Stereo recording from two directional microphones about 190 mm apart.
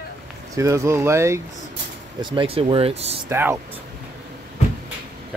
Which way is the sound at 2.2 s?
25° right (ahead or behind).